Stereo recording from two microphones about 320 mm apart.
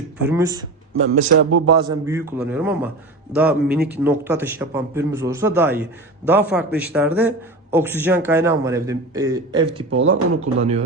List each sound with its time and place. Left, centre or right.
0.3 s speech: centre
1.3 s a man's voice: right
1.6 s a man's voice: centre
9.9 s speech: right
10.6 s speech: centre